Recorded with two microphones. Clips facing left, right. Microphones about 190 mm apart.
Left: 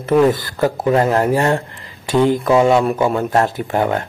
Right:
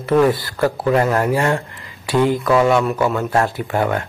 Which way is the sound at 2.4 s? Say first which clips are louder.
Left 2 dB; 25° left (ahead or behind).